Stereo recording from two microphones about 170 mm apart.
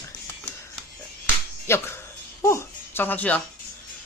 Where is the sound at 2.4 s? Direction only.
15° left (ahead or behind).